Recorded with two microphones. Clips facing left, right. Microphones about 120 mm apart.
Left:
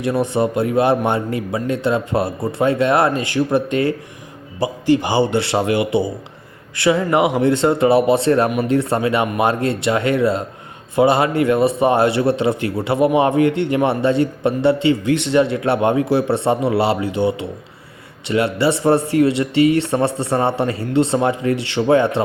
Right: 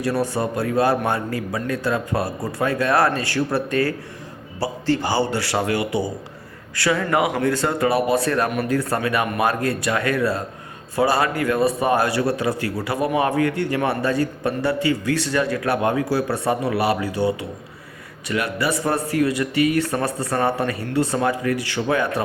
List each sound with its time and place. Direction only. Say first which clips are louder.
0.0 s a man's voice: left 4 dB; 20° left (ahead or behind)